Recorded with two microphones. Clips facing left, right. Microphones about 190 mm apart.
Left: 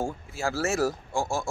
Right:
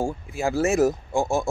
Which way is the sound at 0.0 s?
15° right (ahead or behind).